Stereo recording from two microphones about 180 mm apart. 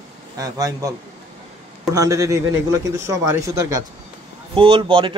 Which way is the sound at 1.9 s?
20° right (ahead or behind).